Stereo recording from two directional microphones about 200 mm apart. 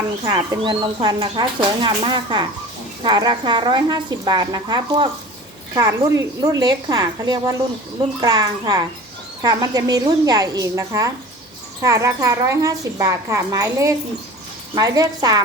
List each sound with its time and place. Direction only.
0.3 s speech: 20° right (ahead or behind)